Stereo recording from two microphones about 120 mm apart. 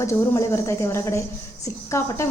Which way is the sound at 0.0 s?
25° left (ahead or behind).